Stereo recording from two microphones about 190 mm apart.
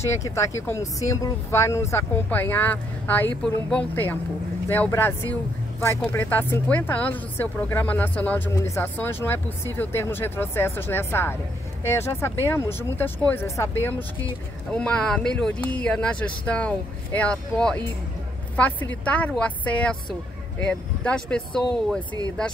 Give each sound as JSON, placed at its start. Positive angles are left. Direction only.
{"t": 0.0, "sound": "speech", "side_deg": 15}
{"t": 3.7, "sound": "a woman's voice", "side_deg": 10}